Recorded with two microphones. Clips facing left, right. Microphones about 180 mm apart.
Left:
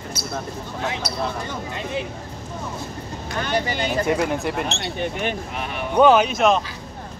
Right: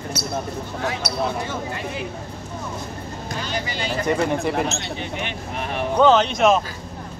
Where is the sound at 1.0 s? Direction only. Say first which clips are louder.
Right 2 dB; 70° right (ahead or behind).